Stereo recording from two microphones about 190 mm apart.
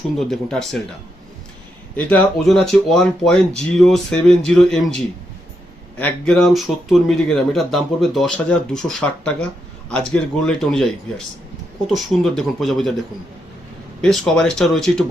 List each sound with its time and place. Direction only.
0.2 s speech: 5° left (ahead or behind)
2.0 s speech: 5° left (ahead or behind)
11.9 s speech: centre (ahead or behind)
14.0 s speech: centre (ahead or behind)